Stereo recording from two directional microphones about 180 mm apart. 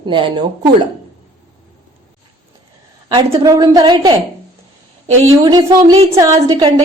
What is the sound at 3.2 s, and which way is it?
Speech, 20° right (ahead or behind).